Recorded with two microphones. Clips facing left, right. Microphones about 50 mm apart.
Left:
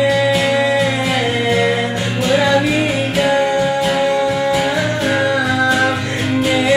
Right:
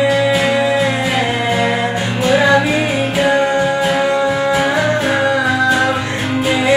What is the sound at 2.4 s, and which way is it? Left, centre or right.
Music, right.